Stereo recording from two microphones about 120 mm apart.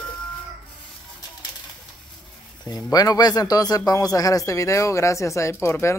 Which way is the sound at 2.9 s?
35° left (ahead or behind).